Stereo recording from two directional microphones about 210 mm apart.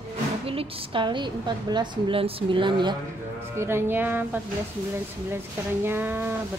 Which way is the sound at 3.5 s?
10° right (ahead or behind).